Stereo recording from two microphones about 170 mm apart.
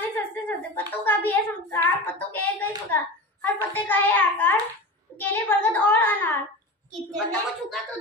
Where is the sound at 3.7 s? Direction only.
10° left (ahead or behind).